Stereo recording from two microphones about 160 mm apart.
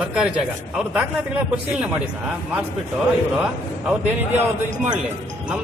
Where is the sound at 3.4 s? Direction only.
10° right (ahead or behind).